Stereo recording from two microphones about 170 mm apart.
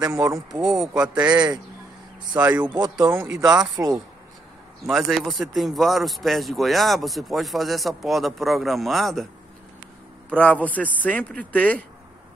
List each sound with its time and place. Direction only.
0.0 s speech: 20° right (ahead or behind)
0.5 s a man's voice: 5° right (ahead or behind)
2.7 s speech: 25° right (ahead or behind)
3.3 s speech: 5° right (ahead or behind)
4.8 s speech: centre (ahead or behind)
10.3 s a man's voice: 10° left (ahead or behind)